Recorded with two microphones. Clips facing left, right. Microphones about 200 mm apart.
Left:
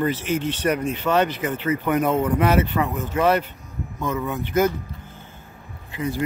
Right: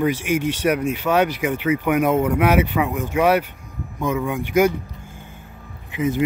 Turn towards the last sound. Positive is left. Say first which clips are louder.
# right 5 dB
turn(degrees=-20)  # may be behind; listen again after turning